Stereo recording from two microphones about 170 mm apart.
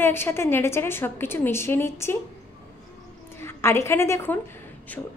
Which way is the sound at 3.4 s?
15° left (ahead or behind).